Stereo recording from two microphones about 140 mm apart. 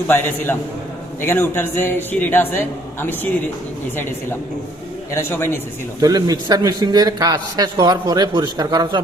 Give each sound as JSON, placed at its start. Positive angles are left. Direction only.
{"t": 0.1, "sound": "a man's voice", "side_deg": 15}
{"t": 5.1, "sound": "a man's voice", "side_deg": 15}
{"t": 6.0, "sound": "a man's voice", "side_deg": -25}